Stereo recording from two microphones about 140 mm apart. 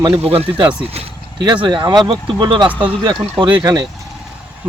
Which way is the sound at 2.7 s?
10° right (ahead or behind).